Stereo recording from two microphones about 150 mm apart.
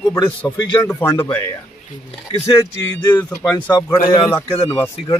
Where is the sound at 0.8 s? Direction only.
15° left (ahead or behind).